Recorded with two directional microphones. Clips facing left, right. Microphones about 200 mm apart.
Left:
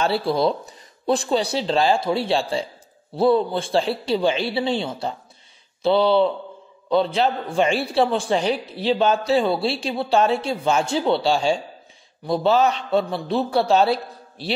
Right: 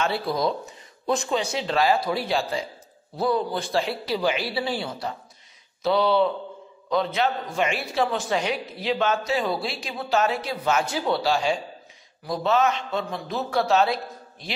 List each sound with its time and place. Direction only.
0.0 s a man's voice: 30° left (ahead or behind)